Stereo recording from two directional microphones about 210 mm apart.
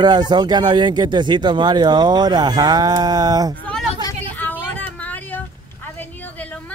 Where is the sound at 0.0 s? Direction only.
20° right (ahead or behind).